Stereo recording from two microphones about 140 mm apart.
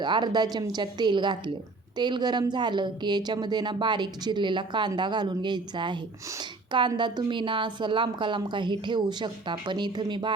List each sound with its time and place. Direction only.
0.0 s a woman's voice: 30° right (ahead or behind)